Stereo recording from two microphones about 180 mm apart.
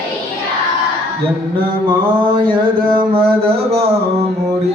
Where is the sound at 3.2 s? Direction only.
35° right (ahead or behind).